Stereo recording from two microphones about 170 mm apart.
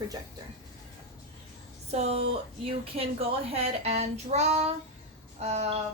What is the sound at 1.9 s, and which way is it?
A woman's voice, 40° right (ahead or behind).